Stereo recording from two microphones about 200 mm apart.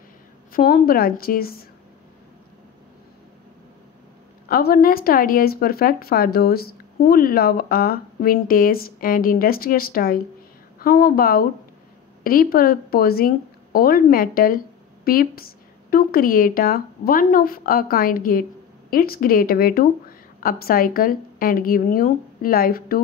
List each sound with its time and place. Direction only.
0.5 s speech: 45° left (ahead or behind)
4.5 s speech: 50° left (ahead or behind)